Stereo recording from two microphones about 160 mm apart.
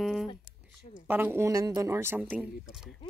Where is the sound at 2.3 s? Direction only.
5° right (ahead or behind).